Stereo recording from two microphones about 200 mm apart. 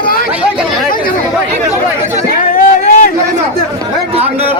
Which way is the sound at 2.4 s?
45° left (ahead or behind).